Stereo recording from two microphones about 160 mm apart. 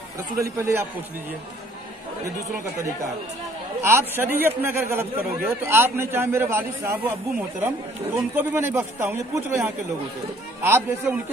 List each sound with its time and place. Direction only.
0.4 s speech: 15° right (ahead or behind)
3.8 s speech: 15° right (ahead or behind)